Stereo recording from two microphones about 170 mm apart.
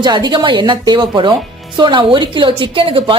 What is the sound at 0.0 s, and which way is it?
A woman's voice, 25° right (ahead or behind).